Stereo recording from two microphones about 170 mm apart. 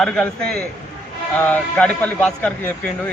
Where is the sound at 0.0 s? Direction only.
5° left (ahead or behind).